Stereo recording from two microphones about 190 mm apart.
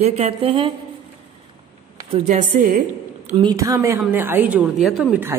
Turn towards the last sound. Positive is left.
turn(degrees=0)  # may be behind; listen again after turning